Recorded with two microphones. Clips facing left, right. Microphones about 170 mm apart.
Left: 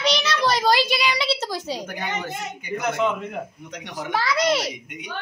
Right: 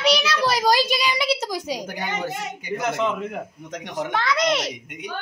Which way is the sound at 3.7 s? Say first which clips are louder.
Right 3 dB; 45° right (ahead or behind).